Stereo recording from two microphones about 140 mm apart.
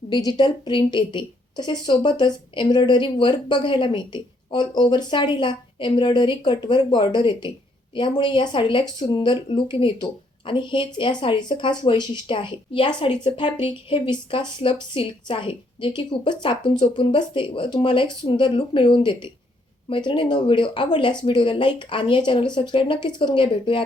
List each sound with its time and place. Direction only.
0.1 s a woman's voice: 30° left (ahead or behind)